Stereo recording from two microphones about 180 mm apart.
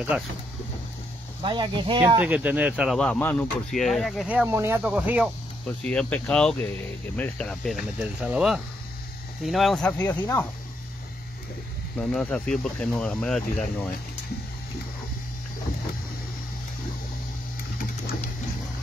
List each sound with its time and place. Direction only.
0.1 s speech: 5° right (ahead or behind)
1.4 s speech: 25° right (ahead or behind)
2.0 s speech: 10° right (ahead or behind)
5.9 s speech: 5° left (ahead or behind)
12.0 s speech: 5° left (ahead or behind)